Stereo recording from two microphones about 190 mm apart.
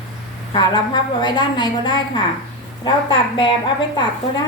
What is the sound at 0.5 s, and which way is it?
A woman's voice, 25° left (ahead or behind).